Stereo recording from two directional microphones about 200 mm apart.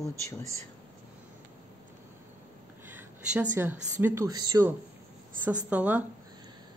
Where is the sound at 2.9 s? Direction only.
10° right (ahead or behind).